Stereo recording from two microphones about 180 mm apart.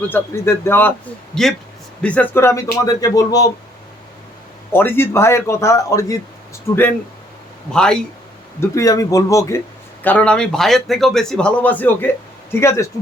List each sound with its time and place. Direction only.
0.1 s a man's voice: 15° left (ahead or behind)
2.0 s a man's voice: 5° left (ahead or behind)
4.7 s a man's voice: 10° left (ahead or behind)
7.7 s a man's voice: 5° left (ahead or behind)
8.6 s a man's voice: 15° left (ahead or behind)